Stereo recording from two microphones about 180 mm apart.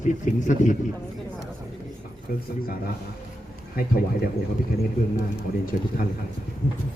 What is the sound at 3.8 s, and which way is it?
Speech, 55° left (ahead or behind).